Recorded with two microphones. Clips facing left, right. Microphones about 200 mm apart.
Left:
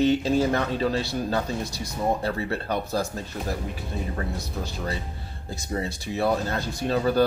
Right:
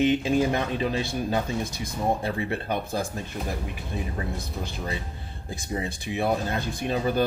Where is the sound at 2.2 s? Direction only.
15° right (ahead or behind).